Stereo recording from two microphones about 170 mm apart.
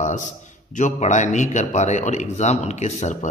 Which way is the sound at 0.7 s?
45° left (ahead or behind).